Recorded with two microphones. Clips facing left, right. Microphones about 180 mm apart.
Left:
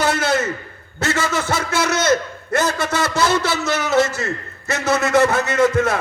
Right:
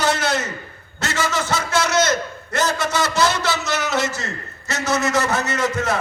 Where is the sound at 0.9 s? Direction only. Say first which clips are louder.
Left 2 dB; 55° left (ahead or behind).